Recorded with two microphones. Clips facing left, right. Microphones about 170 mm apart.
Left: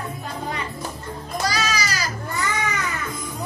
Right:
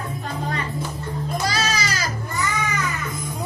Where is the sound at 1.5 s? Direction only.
25° right (ahead or behind).